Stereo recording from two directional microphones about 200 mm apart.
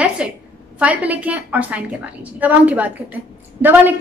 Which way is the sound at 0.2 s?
5° right (ahead or behind).